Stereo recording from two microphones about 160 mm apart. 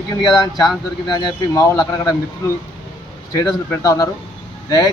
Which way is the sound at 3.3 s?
20° left (ahead or behind).